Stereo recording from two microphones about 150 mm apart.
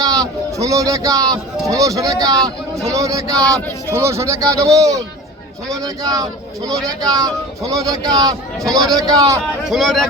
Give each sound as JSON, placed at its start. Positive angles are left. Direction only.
{"t": 0.0, "sound": "speech", "side_deg": -25}
{"t": 9.6, "sound": "speech", "side_deg": 0}